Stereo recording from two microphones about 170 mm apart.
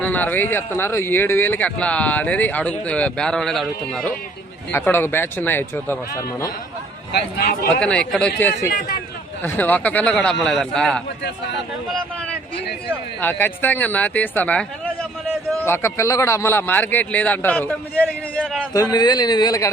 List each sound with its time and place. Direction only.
0.0 s speech: 10° left (ahead or behind)
7.1 s a man's voice: 70° left (ahead or behind)
7.7 s a man's voice: 5° left (ahead or behind)
13.2 s speech: 10° left (ahead or behind)
18.7 s a man's voice: 20° left (ahead or behind)